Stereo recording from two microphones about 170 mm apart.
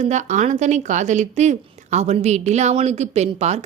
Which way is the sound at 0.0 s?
45° right (ahead or behind).